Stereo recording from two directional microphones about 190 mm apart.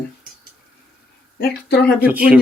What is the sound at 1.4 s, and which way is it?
Speech, 55° left (ahead or behind).